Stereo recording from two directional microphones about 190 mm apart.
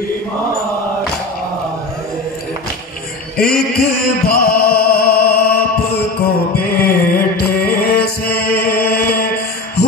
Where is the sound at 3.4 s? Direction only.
50° left (ahead or behind).